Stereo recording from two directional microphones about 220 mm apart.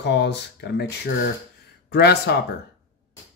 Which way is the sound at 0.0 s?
50° left (ahead or behind).